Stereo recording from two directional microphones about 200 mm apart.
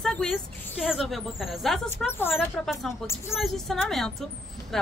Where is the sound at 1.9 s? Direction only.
10° left (ahead or behind).